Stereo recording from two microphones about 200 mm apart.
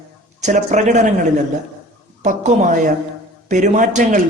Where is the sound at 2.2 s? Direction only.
40° right (ahead or behind).